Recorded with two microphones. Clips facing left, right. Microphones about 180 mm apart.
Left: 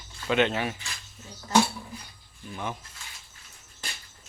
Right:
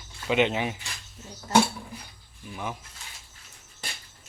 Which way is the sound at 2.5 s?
5° right (ahead or behind).